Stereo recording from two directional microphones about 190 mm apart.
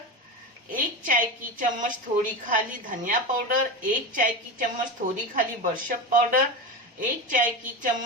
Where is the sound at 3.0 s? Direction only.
45° right (ahead or behind).